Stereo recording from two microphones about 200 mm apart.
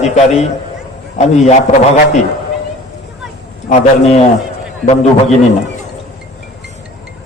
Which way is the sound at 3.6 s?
30° left (ahead or behind).